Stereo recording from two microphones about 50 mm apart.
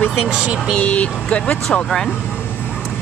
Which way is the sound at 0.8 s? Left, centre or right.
Left.